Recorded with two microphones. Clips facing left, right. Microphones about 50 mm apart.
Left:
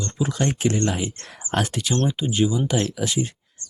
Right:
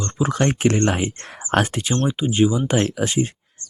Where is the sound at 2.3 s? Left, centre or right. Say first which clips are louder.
Right 6 dB; right.